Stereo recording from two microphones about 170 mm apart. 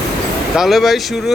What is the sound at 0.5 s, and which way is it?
Speech, centre (ahead or behind).